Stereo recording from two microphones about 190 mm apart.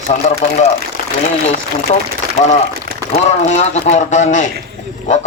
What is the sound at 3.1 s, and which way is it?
A man's voice, 35° left (ahead or behind).